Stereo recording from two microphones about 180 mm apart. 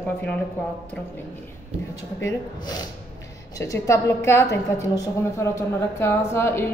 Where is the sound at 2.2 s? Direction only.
20° left (ahead or behind).